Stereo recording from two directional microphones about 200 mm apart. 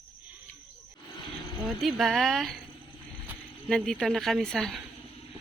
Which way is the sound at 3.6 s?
Centre (ahead or behind).